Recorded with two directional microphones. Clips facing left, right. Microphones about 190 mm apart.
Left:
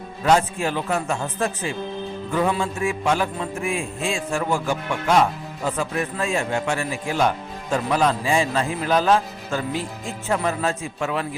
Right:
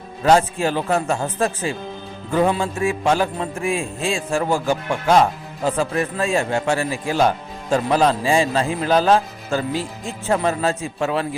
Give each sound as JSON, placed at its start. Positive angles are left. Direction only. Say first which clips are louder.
{"t": 0.3, "sound": "a man's voice", "louder": "right 3 dB", "side_deg": -35}